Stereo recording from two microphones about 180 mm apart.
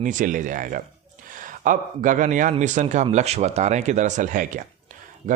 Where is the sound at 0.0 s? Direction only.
45° right (ahead or behind).